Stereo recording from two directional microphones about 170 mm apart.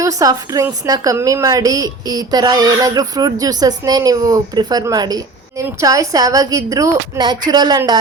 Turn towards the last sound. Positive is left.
turn(degrees=-25)  # may be behind; listen again after turning